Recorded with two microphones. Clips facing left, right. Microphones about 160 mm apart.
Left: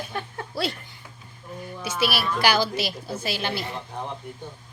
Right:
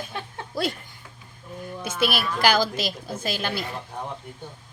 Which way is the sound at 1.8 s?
50° right (ahead or behind).